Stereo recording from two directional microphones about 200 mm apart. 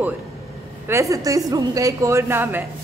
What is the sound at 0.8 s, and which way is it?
A woman's voice, 15° right (ahead or behind).